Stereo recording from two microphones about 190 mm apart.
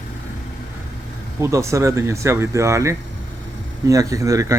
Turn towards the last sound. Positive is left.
turn(degrees=-15)  # may be behind; listen again after turning